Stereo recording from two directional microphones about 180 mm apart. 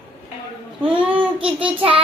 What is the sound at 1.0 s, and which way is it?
Child singing, 30° right (ahead or behind).